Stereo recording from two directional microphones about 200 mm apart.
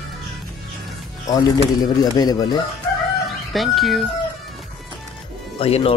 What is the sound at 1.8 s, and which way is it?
Speech, 20° left (ahead or behind).